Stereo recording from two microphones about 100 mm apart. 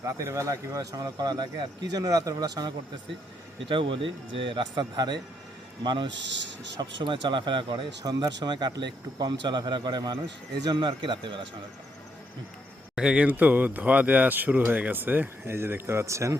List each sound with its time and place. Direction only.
0.0 s speech: 30° right (ahead or behind)
3.7 s speech: 60° right (ahead or behind)
13.0 s speech: 10° right (ahead or behind); by 16.4 s 30° right (ahead or behind)